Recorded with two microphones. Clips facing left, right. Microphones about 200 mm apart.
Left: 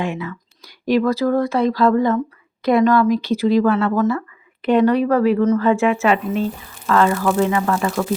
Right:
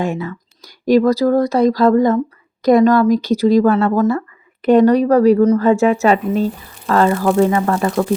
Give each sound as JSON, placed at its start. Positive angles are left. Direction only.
{"t": 0.0, "sound": "speech", "side_deg": -40}